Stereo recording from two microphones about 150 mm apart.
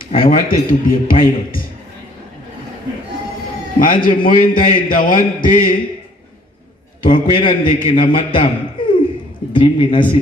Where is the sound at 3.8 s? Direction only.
65° left (ahead or behind).